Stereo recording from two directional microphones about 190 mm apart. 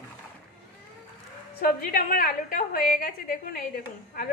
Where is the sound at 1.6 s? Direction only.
50° left (ahead or behind).